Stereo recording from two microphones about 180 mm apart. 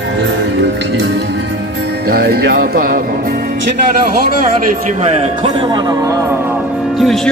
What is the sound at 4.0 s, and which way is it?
A man's voice, 55° right (ahead or behind).